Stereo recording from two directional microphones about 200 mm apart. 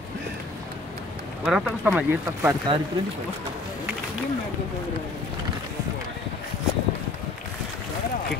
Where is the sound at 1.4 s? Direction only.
5° right (ahead or behind).